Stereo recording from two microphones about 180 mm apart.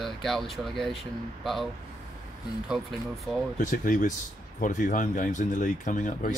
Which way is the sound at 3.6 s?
50° left (ahead or behind).